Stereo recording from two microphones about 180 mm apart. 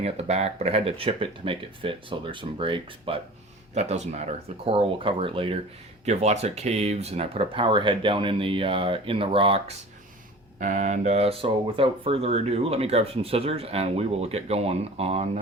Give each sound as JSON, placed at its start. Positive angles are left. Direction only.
{"t": 0.0, "sound": "speech", "side_deg": -35}
{"t": 10.6, "sound": "speech", "side_deg": -45}